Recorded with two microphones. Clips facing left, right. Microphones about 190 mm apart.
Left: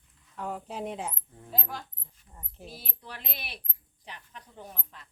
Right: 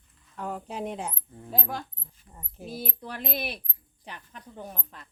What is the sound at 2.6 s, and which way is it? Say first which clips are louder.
A woman's voice: right 9 dB; 45° right (ahead or behind).